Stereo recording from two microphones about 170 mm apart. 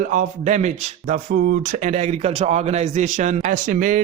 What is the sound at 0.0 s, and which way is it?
Speech, 50° right (ahead or behind).